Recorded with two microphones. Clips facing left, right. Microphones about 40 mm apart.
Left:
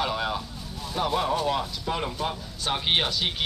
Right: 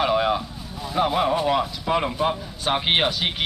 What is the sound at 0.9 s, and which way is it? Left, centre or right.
Speech, right.